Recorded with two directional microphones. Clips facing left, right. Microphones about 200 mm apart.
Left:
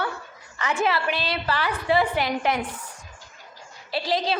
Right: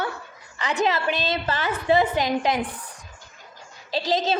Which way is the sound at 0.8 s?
20° right (ahead or behind).